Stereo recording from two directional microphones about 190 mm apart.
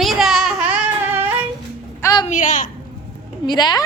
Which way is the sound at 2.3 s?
40° left (ahead or behind).